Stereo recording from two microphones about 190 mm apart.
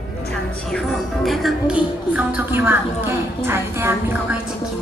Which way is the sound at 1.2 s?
Centre (ahead or behind).